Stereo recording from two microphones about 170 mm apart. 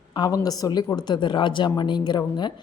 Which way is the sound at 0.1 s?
20° left (ahead or behind).